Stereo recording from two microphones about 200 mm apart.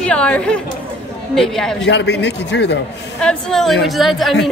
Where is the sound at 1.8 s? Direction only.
60° left (ahead or behind).